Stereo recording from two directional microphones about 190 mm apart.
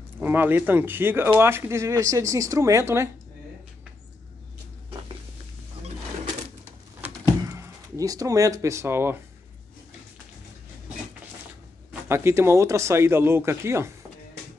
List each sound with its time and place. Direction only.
0.2 s speech: 10° right (ahead or behind)
7.0 s a sound: 15° right (ahead or behind)
11.9 s speech: 15° right (ahead or behind)